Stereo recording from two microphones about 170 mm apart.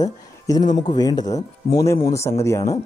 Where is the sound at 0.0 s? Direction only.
20° left (ahead or behind).